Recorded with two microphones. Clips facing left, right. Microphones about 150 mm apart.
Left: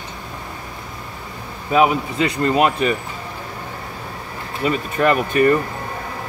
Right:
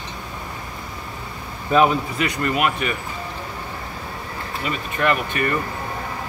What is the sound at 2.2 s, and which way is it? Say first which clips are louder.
Speech: left 6 dB; 30° left (ahead or behind).